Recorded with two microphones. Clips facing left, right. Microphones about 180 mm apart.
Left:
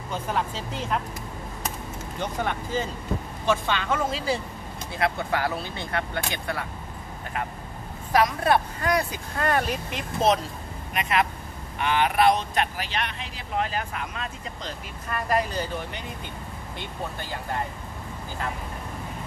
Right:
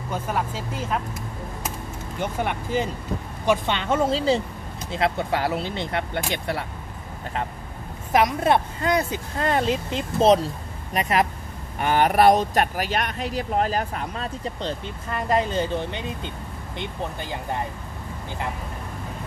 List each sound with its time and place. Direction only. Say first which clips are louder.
0.1 s speech: right 1 dB; 5° right (ahead or behind)
2.1 s speech: right 2 dB; 10° right (ahead or behind)
8.1 s speech: right 2 dB; 20° right (ahead or behind)